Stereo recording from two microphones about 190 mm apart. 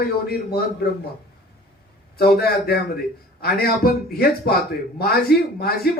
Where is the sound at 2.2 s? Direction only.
55° left (ahead or behind).